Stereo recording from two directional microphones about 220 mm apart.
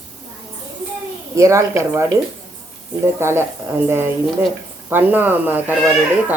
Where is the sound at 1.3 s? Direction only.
15° right (ahead or behind).